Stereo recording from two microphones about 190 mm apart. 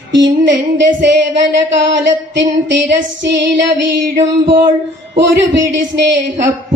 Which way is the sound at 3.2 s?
65° right (ahead or behind).